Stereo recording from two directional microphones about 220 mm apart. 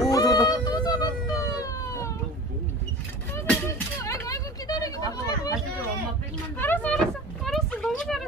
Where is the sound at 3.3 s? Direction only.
10° left (ahead or behind).